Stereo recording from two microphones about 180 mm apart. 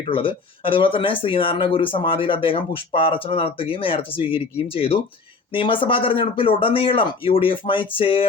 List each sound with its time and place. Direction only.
0.0 s speech: 30° left (ahead or behind)